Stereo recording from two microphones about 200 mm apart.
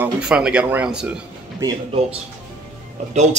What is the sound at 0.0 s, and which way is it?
Speech, 5° right (ahead or behind).